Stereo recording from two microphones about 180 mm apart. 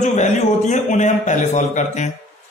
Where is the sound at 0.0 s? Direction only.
40° left (ahead or behind).